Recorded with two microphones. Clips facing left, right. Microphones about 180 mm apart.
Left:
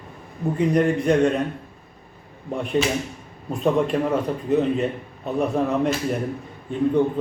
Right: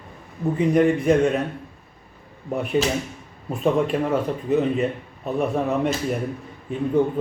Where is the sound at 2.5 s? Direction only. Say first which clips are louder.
Even; 5° right (ahead or behind).